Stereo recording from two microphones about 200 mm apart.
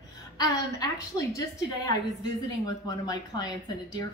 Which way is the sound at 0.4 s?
15° left (ahead or behind).